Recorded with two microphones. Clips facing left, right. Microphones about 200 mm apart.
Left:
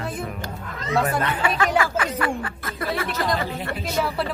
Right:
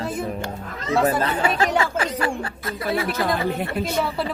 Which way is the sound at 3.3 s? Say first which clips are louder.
Right 4 dB; 55° right (ahead or behind).